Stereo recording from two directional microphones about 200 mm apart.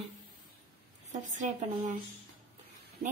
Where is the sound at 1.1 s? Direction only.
40° right (ahead or behind).